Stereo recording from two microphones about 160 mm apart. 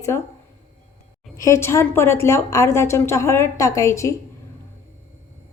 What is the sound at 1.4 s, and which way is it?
A woman's voice, 15° left (ahead or behind).